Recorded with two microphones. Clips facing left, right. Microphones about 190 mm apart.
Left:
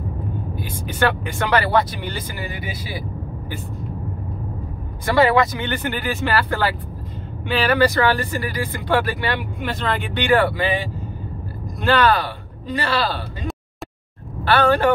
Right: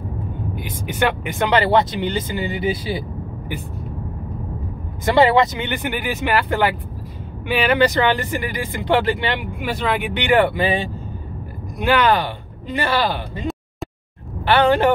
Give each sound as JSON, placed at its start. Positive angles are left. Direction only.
{"t": 0.6, "sound": "speech", "side_deg": -20}
{"t": 5.0, "sound": "speech", "side_deg": -25}
{"t": 9.6, "sound": "speech", "side_deg": -10}